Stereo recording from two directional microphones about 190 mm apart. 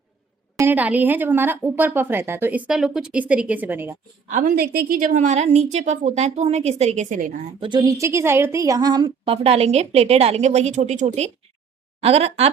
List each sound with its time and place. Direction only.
0.5 s speech: 10° right (ahead or behind)
4.3 s a woman's voice: 45° right (ahead or behind)
7.6 s a woman's voice: 25° right (ahead or behind)